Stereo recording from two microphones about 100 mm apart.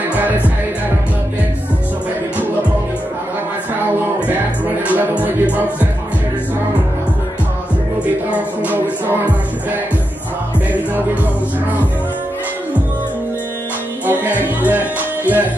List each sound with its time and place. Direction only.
0.1 s music: 15° right (ahead or behind)
4.8 s music: 15° right (ahead or behind)
14.0 s music: 20° right (ahead or behind)